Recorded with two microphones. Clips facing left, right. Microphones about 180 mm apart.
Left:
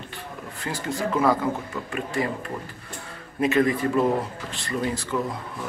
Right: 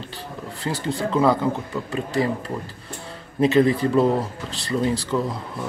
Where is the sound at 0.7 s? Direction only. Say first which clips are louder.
Right 2 dB; 30° right (ahead or behind).